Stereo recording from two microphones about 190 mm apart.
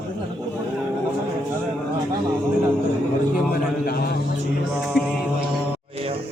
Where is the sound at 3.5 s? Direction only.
55° left (ahead or behind).